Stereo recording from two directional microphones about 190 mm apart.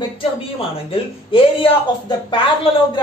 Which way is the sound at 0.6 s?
30° left (ahead or behind).